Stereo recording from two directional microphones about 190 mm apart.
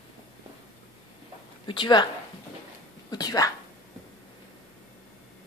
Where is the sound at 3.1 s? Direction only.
20° left (ahead or behind).